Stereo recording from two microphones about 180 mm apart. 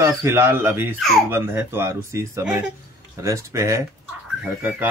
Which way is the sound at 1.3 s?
10° right (ahead or behind).